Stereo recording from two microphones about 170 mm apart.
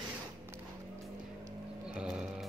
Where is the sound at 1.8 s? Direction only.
5° right (ahead or behind).